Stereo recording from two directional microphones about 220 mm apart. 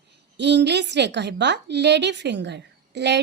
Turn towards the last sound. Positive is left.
turn(degrees=-50)  # may be behind; listen again after turning